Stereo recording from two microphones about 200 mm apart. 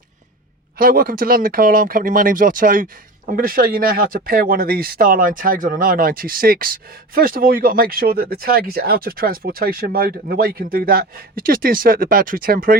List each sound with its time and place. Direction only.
0.8 s speech: 45° right (ahead or behind)